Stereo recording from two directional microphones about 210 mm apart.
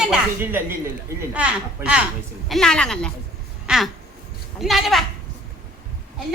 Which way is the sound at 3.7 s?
Centre (ahead or behind).